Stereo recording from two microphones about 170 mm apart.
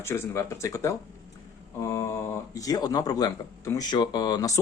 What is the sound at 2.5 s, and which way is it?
Speech, 20° left (ahead or behind).